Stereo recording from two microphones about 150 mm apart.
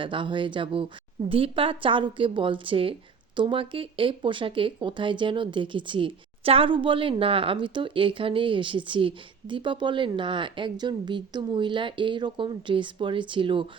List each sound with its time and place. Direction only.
0.0 s speech: 35° right (ahead or behind)